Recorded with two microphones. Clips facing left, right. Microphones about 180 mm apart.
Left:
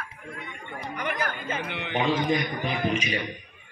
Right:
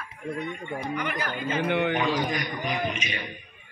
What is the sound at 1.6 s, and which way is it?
Speech, 50° right (ahead or behind).